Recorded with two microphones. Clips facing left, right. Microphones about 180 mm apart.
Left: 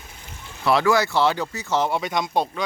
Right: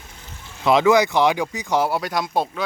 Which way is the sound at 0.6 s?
20° right (ahead or behind).